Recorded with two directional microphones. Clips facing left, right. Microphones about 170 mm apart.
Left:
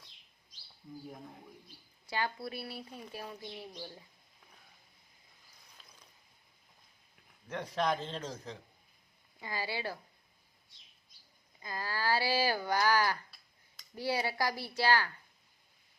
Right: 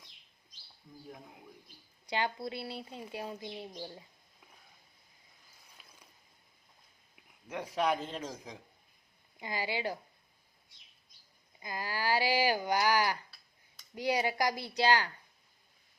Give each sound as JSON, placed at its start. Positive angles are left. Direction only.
{"t": 2.0, "sound": "speech", "side_deg": -20}
{"t": 5.8, "sound": "a sound", "side_deg": -10}
{"t": 7.4, "sound": "speech", "side_deg": -10}
{"t": 11.6, "sound": "speech", "side_deg": -15}